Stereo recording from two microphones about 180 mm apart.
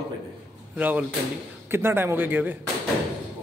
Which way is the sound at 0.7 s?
10° right (ahead or behind).